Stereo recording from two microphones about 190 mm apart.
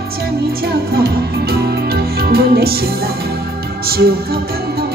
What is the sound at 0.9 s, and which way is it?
Music, 55° right (ahead or behind).